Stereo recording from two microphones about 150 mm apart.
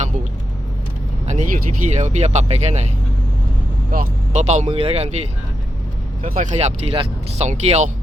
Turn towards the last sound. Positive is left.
turn(degrees=-50)  # may be behind; listen again after turning